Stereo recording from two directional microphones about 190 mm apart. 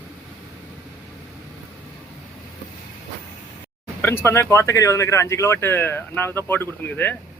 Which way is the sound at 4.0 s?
10° left (ahead or behind).